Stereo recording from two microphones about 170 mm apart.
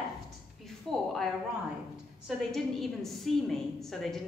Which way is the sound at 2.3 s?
Centre (ahead or behind).